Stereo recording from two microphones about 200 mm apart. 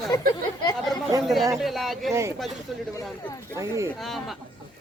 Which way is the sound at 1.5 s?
Centre (ahead or behind).